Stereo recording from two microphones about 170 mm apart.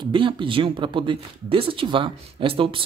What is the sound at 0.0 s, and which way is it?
Speech, 30° right (ahead or behind).